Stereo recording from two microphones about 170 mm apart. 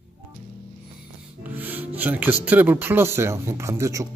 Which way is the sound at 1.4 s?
10° right (ahead or behind).